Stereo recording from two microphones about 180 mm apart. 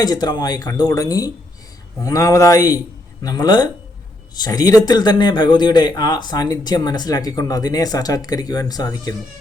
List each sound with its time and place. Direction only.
0.0 s a man's voice: 20° left (ahead or behind)